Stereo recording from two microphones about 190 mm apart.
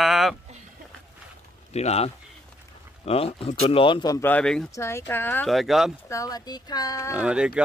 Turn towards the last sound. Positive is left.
turn(degrees=-5)  # may be behind; listen again after turning